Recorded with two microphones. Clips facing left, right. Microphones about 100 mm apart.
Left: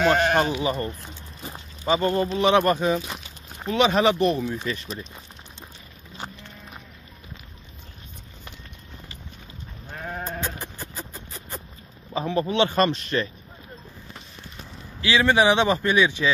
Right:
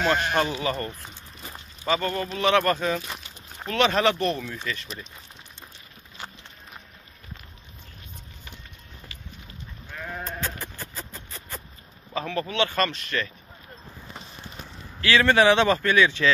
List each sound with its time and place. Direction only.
0.4 s speech: 15° left (ahead or behind)
9.8 s goat: 35° left (ahead or behind)
10.4 s a sound: 20° left (ahead or behind)
12.1 s speech: 20° left (ahead or behind)
15.0 s speech: 15° left (ahead or behind)